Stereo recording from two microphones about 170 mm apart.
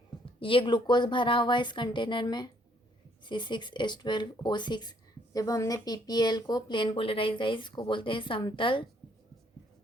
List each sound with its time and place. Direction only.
0.3 s speech: 30° left (ahead or behind)